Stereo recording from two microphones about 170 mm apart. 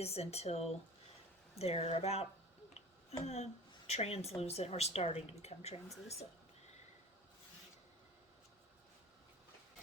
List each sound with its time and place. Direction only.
0.0 s a woman's voice: 40° left (ahead or behind)
3.2 s a woman's voice: 40° left (ahead or behind)